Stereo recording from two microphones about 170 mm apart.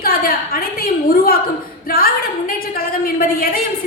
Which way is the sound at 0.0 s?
60° left (ahead or behind).